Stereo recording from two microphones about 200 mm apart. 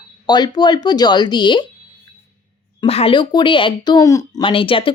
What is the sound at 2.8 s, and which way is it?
Speech, 30° left (ahead or behind).